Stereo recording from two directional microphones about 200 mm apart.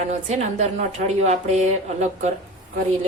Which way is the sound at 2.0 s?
35° right (ahead or behind).